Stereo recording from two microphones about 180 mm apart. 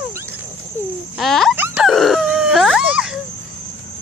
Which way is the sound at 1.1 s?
Centre (ahead or behind).